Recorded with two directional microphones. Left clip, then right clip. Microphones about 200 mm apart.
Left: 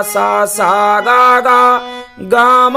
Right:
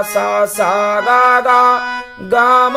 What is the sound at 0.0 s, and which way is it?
Music, 35° left (ahead or behind).